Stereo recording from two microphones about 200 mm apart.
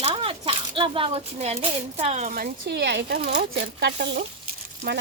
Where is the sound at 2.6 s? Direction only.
60° right (ahead or behind).